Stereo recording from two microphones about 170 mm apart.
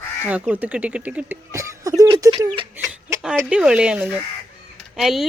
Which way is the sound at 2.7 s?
10° right (ahead or behind).